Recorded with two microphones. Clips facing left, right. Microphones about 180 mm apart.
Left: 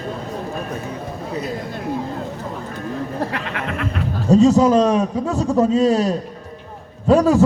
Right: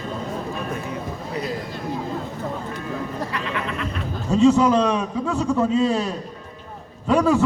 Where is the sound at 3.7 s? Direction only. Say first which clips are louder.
Left 4 dB; 35° right (ahead or behind).